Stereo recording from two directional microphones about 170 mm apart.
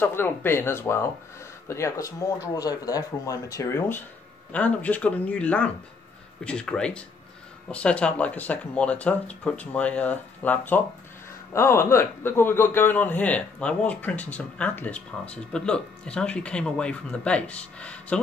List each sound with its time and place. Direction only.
0.0 s a man's voice: 10° left (ahead or behind)